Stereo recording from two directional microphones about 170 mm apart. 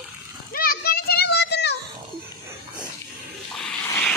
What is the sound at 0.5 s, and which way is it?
Children playing, 60° left (ahead or behind).